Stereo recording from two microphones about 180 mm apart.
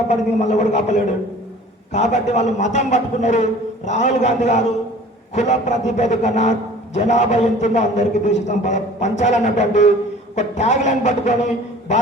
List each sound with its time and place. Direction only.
0.1 s a man's voice: 40° left (ahead or behind)